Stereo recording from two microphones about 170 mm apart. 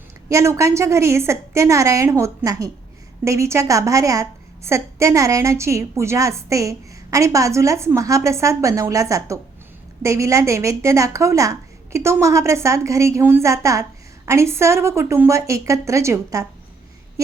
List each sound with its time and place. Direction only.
0.3 s a woman's voice: 20° right (ahead or behind)